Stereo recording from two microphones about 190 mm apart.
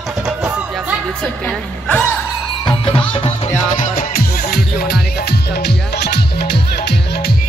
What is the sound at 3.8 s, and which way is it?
Music, 50° left (ahead or behind).